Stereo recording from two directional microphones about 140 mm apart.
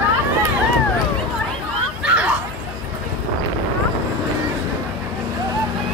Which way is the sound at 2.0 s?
10° right (ahead or behind).